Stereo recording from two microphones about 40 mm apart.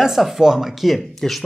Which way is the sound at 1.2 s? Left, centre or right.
Centre.